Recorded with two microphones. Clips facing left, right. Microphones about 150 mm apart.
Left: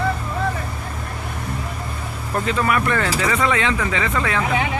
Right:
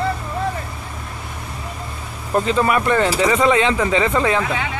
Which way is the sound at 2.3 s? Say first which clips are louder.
Right 3 dB; 25° right (ahead or behind).